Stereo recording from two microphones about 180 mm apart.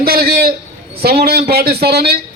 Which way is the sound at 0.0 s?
60° right (ahead or behind).